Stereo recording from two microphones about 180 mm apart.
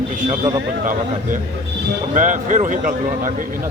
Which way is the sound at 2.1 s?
45° right (ahead or behind).